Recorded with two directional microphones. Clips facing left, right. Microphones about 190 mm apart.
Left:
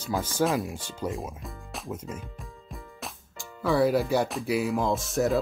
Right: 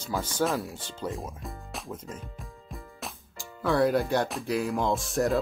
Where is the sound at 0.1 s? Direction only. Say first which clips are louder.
Left 2 dB; centre (ahead or behind).